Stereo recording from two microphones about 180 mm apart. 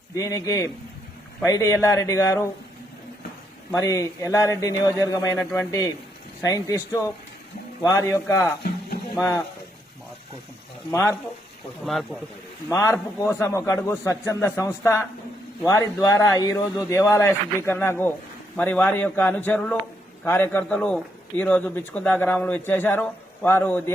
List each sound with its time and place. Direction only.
0.2 s a man's voice: 20° left (ahead or behind)
3.7 s a man's voice: 15° left (ahead or behind)
8.6 s music: 60° left (ahead or behind)
12.6 s a man's voice: 15° left (ahead or behind)